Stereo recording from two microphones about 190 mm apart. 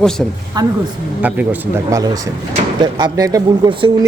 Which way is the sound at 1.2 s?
10° right (ahead or behind).